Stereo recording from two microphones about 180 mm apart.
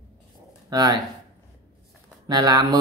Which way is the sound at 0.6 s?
20° right (ahead or behind).